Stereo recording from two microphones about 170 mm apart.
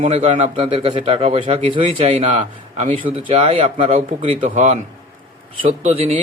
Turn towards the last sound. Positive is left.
turn(degrees=-40)  # may be behind; listen again after turning